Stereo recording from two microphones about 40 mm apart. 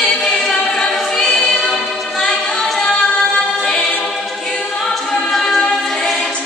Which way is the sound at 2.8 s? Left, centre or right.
Centre.